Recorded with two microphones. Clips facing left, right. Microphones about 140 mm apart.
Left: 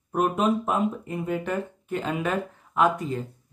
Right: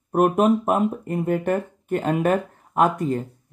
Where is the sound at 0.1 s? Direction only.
50° right (ahead or behind).